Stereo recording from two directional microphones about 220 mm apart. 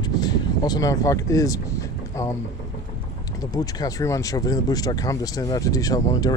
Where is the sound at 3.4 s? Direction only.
15° left (ahead or behind).